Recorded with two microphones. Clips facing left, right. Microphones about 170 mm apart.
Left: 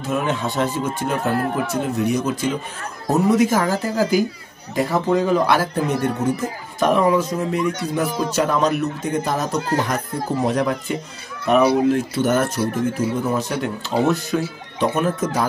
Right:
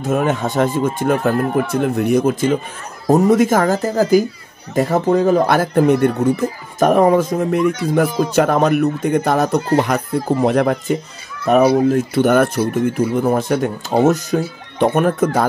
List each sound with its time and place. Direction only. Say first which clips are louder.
0.0 s speech: right 5 dB; 50° right (ahead or behind)
6.8 s speech: right 5 dB; 45° right (ahead or behind)
11.5 s speech: right 3 dB; 40° right (ahead or behind)
12.1 s speech: right 5 dB; 60° right (ahead or behind)